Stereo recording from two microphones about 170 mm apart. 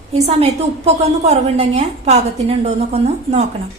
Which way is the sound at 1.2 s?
40° right (ahead or behind).